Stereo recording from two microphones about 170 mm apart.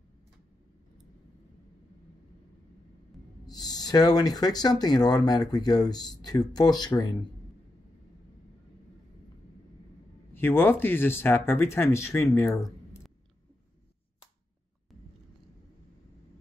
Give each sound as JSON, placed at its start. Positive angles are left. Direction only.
{"t": 3.4, "sound": "speech", "side_deg": 25}
{"t": 10.3, "sound": "speech", "side_deg": 10}